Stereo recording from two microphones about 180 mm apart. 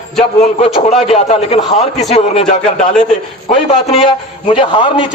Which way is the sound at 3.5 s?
30° left (ahead or behind).